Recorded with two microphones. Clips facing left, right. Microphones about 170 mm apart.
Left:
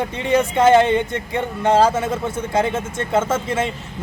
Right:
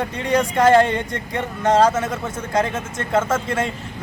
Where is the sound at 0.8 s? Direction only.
25° left (ahead or behind).